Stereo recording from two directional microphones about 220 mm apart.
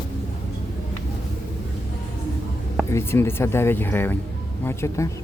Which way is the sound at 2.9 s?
10° left (ahead or behind).